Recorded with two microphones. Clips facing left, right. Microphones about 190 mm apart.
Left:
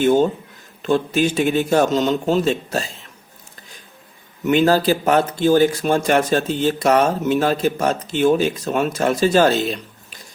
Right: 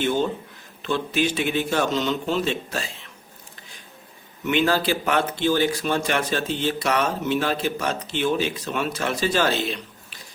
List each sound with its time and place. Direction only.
0.0 s speech: 45° left (ahead or behind)
4.4 s speech: 40° left (ahead or behind)